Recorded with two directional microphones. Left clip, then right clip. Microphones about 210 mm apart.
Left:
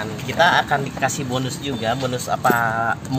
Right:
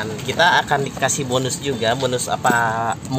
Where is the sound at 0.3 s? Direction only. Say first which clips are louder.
Right 1 dB; 25° right (ahead or behind).